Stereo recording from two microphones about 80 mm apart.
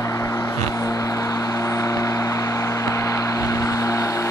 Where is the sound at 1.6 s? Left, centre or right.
Left.